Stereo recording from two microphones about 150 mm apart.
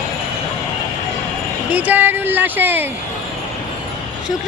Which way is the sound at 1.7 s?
10° right (ahead or behind).